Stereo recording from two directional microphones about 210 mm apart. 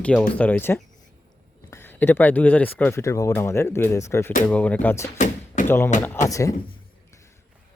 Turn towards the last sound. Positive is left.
turn(degrees=15)  # may be behind; listen again after turning